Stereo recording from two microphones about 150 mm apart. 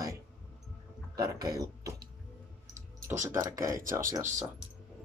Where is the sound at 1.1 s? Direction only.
25° right (ahead or behind).